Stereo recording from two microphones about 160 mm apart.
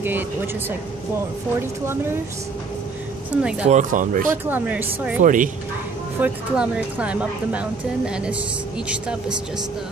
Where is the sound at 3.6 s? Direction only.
50° right (ahead or behind).